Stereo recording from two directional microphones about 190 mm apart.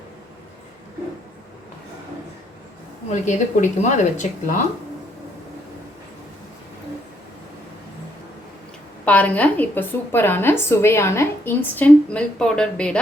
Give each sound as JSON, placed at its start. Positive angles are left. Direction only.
{"t": 3.1, "sound": "speech", "side_deg": 40}
{"t": 9.0, "sound": "a woman's voice", "side_deg": 10}